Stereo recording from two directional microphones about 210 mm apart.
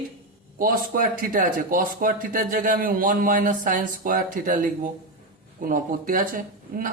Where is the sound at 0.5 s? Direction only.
40° right (ahead or behind).